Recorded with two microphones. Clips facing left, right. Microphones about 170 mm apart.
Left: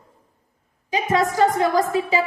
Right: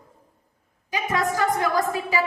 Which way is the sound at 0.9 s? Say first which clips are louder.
Left 4 dB; 20° left (ahead or behind).